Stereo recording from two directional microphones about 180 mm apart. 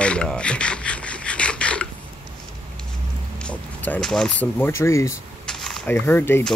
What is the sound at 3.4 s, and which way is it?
Speech, 5° left (ahead or behind).